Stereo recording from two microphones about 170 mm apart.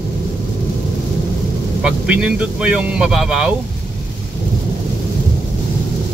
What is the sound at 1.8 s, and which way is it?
Speech, 5° right (ahead or behind).